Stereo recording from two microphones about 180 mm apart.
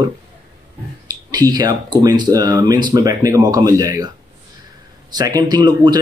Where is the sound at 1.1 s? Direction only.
20° right (ahead or behind).